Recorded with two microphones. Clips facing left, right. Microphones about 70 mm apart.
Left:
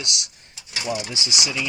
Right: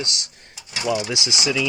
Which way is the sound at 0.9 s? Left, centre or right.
Right.